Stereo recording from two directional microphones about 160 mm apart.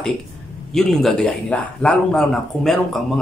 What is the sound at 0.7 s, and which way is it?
Speech, centre (ahead or behind).